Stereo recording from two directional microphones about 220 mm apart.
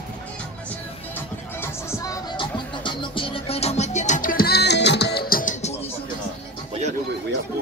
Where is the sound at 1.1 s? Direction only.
10° left (ahead or behind); by 5.7 s 35° left (ahead or behind).